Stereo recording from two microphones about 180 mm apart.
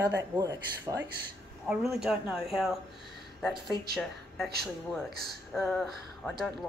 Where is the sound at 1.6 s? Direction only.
5° right (ahead or behind).